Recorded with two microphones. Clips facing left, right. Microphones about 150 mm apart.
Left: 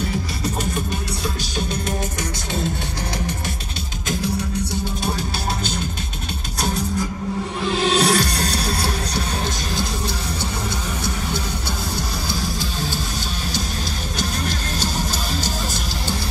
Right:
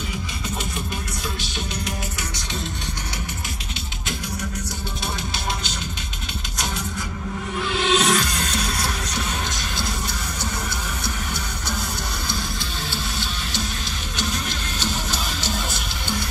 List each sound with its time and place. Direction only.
7.8 s music: 35° left (ahead or behind)